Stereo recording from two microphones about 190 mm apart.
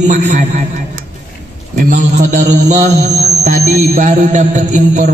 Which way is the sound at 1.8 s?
40° right (ahead or behind).